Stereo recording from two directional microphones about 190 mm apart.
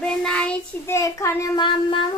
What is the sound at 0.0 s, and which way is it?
Child singing, 5° left (ahead or behind).